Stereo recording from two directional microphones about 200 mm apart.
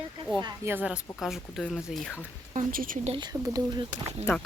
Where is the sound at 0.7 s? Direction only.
5° right (ahead or behind).